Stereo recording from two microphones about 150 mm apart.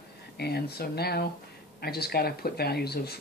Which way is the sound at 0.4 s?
90° left.